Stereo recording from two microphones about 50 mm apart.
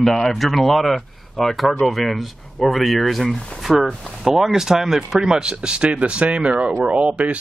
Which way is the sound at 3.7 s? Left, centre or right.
Centre.